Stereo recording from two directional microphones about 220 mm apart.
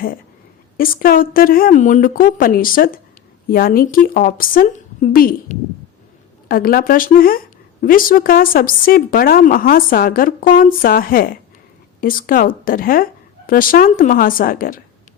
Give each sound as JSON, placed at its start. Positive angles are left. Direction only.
{"t": 0.8, "sound": "speech", "side_deg": 40}